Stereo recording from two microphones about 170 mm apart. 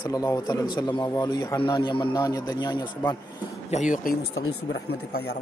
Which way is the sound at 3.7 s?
50° left (ahead or behind).